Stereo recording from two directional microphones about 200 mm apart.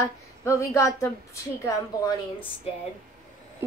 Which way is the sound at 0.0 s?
15° left (ahead or behind).